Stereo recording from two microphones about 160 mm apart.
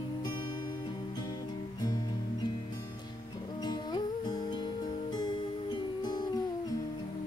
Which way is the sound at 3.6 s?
25° left (ahead or behind).